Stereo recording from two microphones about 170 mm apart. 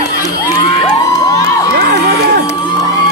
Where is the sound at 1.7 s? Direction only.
75° right (ahead or behind).